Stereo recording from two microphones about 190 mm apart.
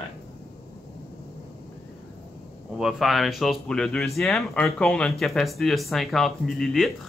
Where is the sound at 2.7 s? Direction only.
Centre (ahead or behind).